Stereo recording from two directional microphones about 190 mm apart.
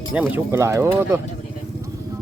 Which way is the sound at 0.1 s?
10° right (ahead or behind).